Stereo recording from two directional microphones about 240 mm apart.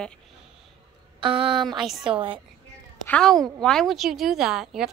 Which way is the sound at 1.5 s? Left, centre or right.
Centre.